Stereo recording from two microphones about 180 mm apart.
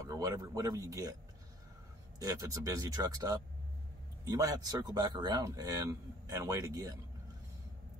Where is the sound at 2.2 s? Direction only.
20° right (ahead or behind).